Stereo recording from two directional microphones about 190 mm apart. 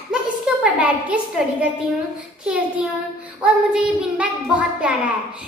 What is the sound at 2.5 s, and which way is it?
A woman's voice, 5° right (ahead or behind).